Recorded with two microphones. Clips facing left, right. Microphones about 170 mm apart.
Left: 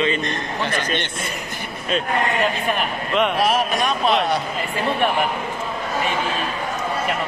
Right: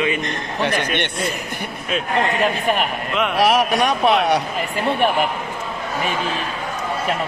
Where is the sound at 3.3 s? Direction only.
70° right (ahead or behind).